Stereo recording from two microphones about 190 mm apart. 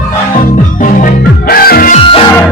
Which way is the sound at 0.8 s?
45° left (ahead or behind).